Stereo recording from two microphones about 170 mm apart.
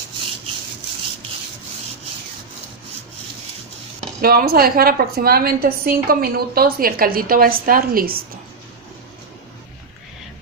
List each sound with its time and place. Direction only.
4.2 s a woman's voice: 65° right (ahead or behind)